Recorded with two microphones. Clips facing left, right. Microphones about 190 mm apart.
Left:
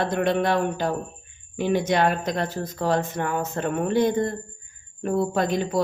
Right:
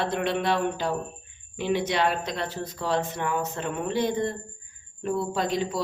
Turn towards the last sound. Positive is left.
turn(degrees=50)  # may be behind; listen again after turning